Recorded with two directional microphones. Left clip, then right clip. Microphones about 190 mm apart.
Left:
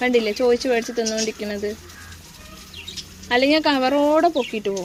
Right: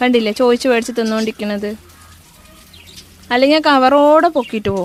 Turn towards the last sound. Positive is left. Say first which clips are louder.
# right 5 dB
turn(degrees=-50)  # may be behind; listen again after turning